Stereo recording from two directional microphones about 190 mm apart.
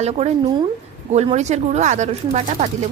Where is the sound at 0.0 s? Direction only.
35° right (ahead or behind).